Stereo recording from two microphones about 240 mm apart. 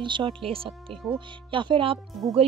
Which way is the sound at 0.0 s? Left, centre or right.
Centre.